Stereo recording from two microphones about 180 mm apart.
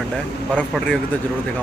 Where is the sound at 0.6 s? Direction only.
5° left (ahead or behind).